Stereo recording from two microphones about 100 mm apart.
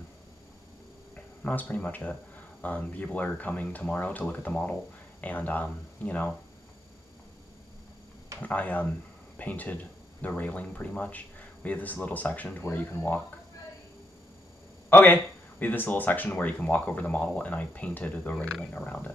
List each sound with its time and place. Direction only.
1.4 s a man's voice: 15° left (ahead or behind)
8.4 s a man's voice: 15° left (ahead or behind)
14.9 s a man's voice: 20° left (ahead or behind)